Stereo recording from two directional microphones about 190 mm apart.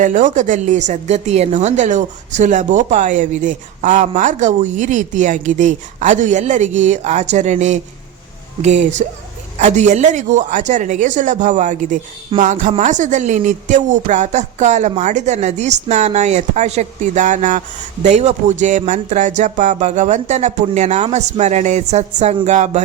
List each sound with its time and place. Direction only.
0.0 s speech: 40° right (ahead or behind)